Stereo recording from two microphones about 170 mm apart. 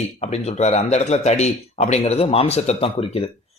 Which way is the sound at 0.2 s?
40° left (ahead or behind).